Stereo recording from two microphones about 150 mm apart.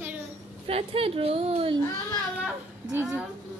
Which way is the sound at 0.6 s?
40° right (ahead or behind).